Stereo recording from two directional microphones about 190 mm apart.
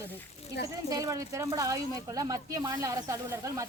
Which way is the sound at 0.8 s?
20° right (ahead or behind).